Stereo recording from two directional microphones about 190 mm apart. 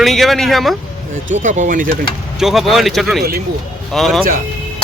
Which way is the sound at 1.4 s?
40° right (ahead or behind).